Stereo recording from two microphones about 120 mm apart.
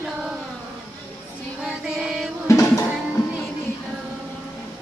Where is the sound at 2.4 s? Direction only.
25° left (ahead or behind).